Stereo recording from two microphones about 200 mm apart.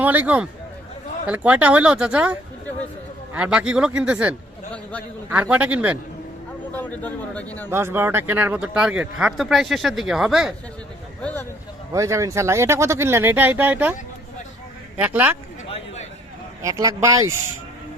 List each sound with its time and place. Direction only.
0.0 s speech: 10° right (ahead or behind)
4.7 s a man's voice: 5° left (ahead or behind)
5.3 s speech: 5° right (ahead or behind)
6.7 s a man's voice: 10° left (ahead or behind)
7.7 s a man's voice: 10° right (ahead or behind); by 11.4 s 5° left (ahead or behind)
11.9 s speech: 15° right (ahead or behind)
14.9 s speech: 10° right (ahead or behind)
16.6 s speech: 15° right (ahead or behind)